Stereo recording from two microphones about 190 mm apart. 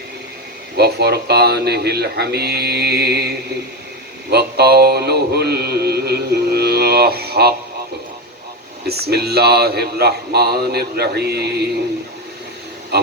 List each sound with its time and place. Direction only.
0.8 s mantra: 60° right (ahead or behind)
8.9 s mantra: 55° right (ahead or behind)